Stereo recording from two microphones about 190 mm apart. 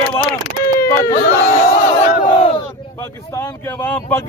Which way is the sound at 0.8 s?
15° left (ahead or behind).